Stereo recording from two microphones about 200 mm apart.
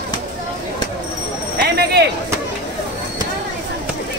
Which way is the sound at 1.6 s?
50° right (ahead or behind).